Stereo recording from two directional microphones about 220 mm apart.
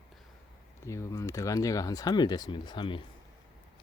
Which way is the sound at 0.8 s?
15° left (ahead or behind).